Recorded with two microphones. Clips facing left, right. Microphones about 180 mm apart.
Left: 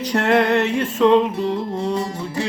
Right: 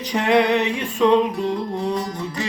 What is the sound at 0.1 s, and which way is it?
Music, centre (ahead or behind).